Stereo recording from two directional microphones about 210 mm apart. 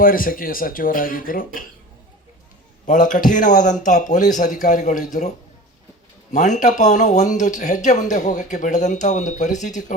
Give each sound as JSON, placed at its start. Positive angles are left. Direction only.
{"t": 0.0, "sound": "speech", "side_deg": 40}
{"t": 2.8, "sound": "speech", "side_deg": 40}
{"t": 6.3, "sound": "speech", "side_deg": 35}